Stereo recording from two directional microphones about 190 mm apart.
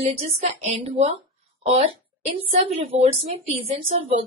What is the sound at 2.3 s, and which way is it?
A woman's voice, 30° right (ahead or behind).